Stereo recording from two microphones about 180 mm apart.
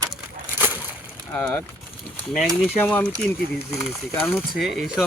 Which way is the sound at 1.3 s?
10° left (ahead or behind).